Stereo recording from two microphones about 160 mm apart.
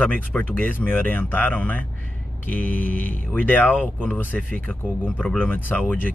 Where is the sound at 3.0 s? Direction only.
55° left (ahead or behind).